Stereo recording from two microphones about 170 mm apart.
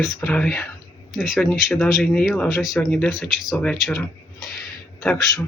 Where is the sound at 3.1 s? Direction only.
5° right (ahead or behind).